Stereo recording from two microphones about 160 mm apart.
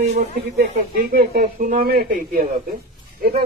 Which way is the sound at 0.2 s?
80° right.